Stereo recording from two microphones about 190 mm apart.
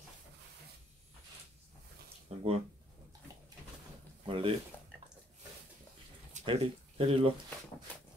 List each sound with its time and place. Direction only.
2.2 s speech: 30° right (ahead or behind)
4.3 s speech: 30° right (ahead or behind)
6.3 s speech: 30° right (ahead or behind)